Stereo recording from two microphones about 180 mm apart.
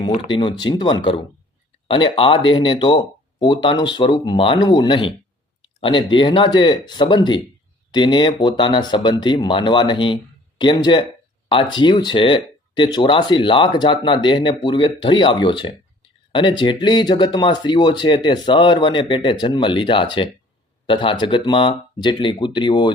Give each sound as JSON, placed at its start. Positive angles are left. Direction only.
{"t": 0.3, "sound": "speech", "side_deg": 25}